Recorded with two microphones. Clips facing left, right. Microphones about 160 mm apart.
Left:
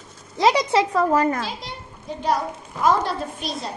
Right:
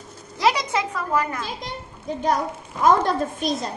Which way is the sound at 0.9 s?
40° left (ahead or behind).